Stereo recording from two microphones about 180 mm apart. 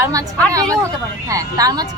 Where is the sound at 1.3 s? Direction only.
20° right (ahead or behind).